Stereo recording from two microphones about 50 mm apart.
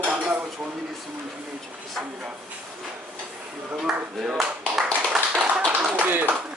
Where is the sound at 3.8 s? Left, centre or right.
Centre.